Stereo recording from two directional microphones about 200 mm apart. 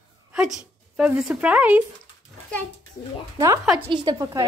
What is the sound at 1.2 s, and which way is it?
Speech, 5° right (ahead or behind).